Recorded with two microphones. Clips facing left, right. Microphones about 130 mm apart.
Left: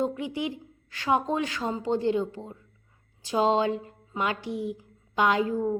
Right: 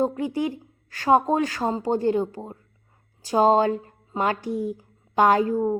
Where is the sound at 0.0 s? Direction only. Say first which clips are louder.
Right 5 dB; 45° right (ahead or behind).